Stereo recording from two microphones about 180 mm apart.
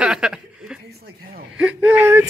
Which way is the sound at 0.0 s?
5° right (ahead or behind).